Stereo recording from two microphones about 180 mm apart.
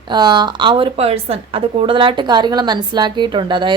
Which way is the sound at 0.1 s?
25° right (ahead or behind).